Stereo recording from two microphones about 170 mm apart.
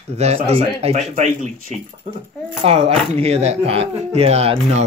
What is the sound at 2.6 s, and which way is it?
Speech, 40° right (ahead or behind).